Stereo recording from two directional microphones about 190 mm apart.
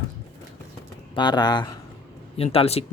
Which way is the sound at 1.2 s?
20° left (ahead or behind).